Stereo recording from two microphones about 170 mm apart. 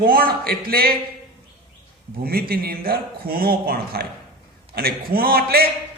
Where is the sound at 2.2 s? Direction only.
60° right (ahead or behind).